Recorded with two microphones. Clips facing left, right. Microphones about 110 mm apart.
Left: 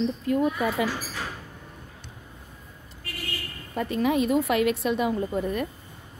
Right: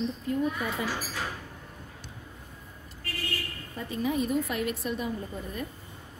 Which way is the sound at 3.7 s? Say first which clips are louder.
Left 6 dB; 75° left (ahead or behind).